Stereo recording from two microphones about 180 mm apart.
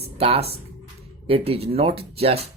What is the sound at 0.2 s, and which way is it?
Speech, 35° right (ahead or behind).